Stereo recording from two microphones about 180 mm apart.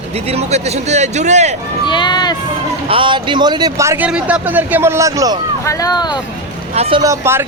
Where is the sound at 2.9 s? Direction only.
25° right (ahead or behind).